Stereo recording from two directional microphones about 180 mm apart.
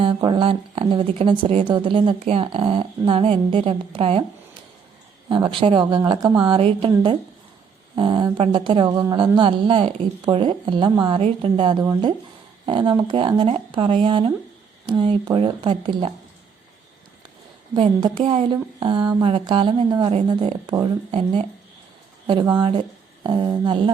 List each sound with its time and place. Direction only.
0.0 s a woman's voice: 25° right (ahead or behind)
5.3 s a woman's voice: 30° right (ahead or behind)
18.3 s a woman's voice: 30° right (ahead or behind)
22.5 s a woman's voice: 25° right (ahead or behind)